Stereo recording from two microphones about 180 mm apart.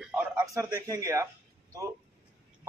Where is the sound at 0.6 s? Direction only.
20° right (ahead or behind).